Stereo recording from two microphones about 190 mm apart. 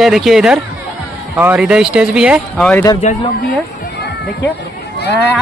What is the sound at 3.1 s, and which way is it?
Speech, 40° left (ahead or behind).